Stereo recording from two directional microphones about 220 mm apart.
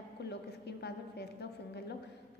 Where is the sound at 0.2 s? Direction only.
50° left (ahead or behind).